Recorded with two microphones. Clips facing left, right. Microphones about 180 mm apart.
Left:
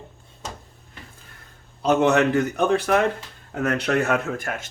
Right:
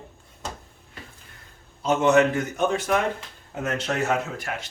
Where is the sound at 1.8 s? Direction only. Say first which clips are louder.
Left 1 dB; 65° left (ahead or behind).